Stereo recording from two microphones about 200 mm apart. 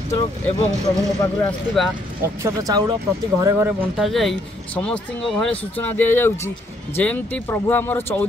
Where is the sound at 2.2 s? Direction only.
15° right (ahead or behind).